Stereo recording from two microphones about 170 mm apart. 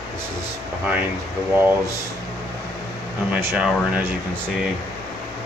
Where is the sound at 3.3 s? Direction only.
15° right (ahead or behind).